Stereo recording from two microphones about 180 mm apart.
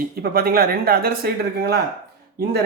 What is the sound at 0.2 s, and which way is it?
Speech, 55° right (ahead or behind).